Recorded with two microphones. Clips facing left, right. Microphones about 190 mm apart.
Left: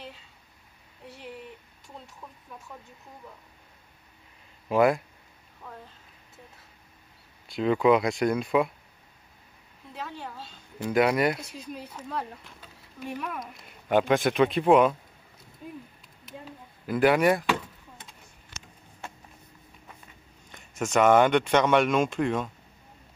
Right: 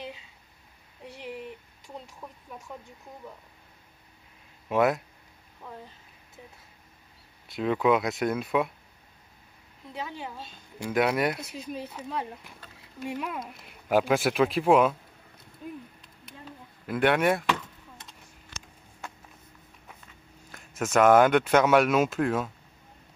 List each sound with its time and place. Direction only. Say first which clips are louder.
4.6 s speech: left 2 dB; centre (ahead or behind)
7.4 s speech: left 2 dB; centre (ahead or behind)
9.9 s speech: right 1 dB; centre (ahead or behind)
10.3 s a woman's voice: even; 20° right (ahead or behind)
10.9 s speech: left 2 dB; centre (ahead or behind)
13.4 s speech: right 1 dB; 5° right (ahead or behind)
16.3 s a sound: left 3 dB; centre (ahead or behind)
20.5 s speech: right 1 dB; centre (ahead or behind)